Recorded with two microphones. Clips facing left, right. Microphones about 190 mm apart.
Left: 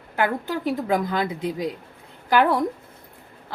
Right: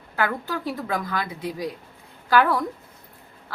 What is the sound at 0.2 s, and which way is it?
Speech, 20° left (ahead or behind).